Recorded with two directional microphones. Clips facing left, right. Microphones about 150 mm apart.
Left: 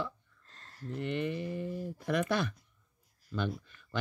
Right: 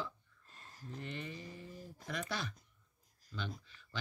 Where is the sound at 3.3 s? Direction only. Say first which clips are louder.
Left 9 dB; 55° left (ahead or behind).